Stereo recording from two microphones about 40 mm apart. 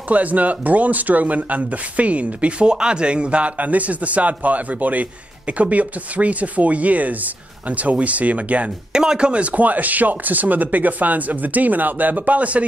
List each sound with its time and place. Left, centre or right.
0.1 s speech: right
8.9 s speech: centre
9.3 s speech: right